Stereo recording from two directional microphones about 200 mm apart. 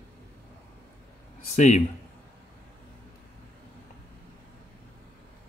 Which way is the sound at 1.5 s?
35° left (ahead or behind).